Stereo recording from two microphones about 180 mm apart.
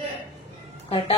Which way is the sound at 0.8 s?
35° left (ahead or behind).